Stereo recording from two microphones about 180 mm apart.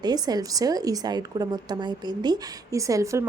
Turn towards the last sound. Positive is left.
turn(degrees=-15)  # may be behind; listen again after turning